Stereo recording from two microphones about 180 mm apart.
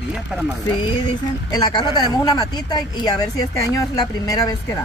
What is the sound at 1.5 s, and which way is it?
Speech, 20° left (ahead or behind).